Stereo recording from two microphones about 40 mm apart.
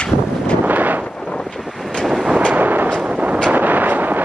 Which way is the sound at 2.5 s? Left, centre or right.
Right.